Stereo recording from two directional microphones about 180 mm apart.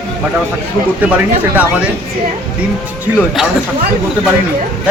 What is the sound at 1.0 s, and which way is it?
Speech, 10° right (ahead or behind).